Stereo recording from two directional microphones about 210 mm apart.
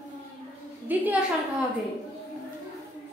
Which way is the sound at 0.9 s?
10° right (ahead or behind).